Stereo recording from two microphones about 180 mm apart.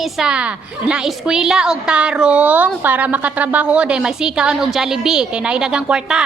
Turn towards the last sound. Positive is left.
turn(degrees=-5)  # may be behind; listen again after turning